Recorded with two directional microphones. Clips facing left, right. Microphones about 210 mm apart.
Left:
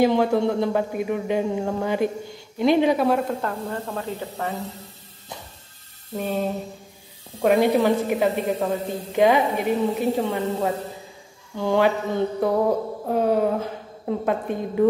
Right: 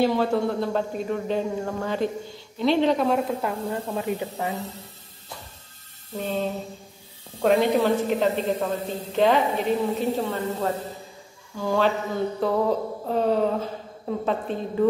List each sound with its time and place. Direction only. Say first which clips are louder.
0.0 s a woman's voice: left 3 dB; 15° left (ahead or behind); by 4.6 s 15° right (ahead or behind)
6.1 s a woman's voice: left 2 dB; 10° left (ahead or behind)
7.4 s a woman's voice: left 2 dB; 10° left (ahead or behind)